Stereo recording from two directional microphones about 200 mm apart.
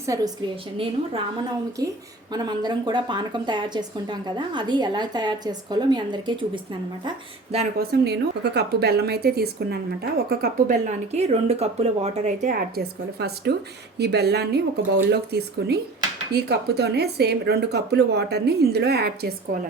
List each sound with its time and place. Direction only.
0.0 s a woman's voice: 15° right (ahead or behind)
2.3 s a woman's voice: 20° right (ahead or behind)
7.8 s a woman's voice: 55° right (ahead or behind)